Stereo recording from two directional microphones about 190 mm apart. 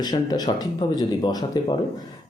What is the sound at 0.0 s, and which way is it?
Speech, 20° left (ahead or behind).